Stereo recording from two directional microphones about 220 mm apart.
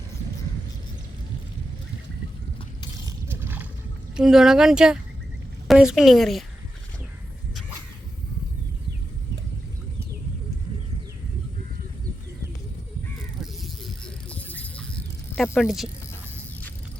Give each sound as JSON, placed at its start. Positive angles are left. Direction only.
{"t": 3.1, "sound": "a sound", "side_deg": -10}
{"t": 4.2, "sound": "a woman's voice", "side_deg": 0}
{"t": 13.4, "sound": "vehicle", "side_deg": 0}
{"t": 15.4, "sound": "a woman's voice", "side_deg": 0}